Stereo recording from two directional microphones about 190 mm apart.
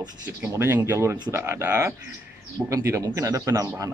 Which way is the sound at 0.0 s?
15° right (ahead or behind).